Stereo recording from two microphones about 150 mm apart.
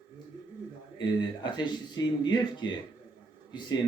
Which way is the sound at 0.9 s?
30° left (ahead or behind).